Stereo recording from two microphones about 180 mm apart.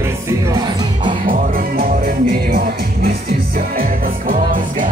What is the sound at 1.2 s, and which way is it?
Music, 50° right (ahead or behind).